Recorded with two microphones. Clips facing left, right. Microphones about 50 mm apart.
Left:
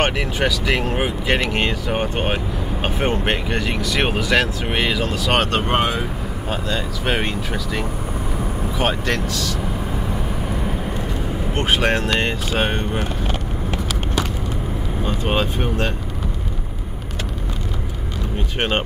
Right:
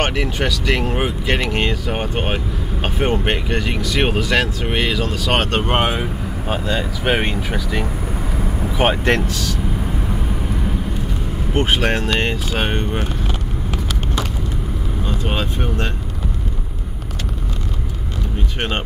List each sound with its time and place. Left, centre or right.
0.0 s speech: centre
5.7 s speech: centre
11.5 s speech: centre
15.0 s speech: centre